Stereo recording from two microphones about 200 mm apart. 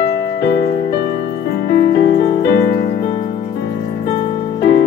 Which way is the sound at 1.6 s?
60° left (ahead or behind).